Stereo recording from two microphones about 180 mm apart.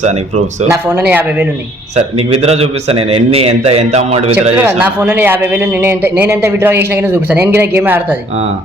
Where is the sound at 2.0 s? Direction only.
35° right (ahead or behind).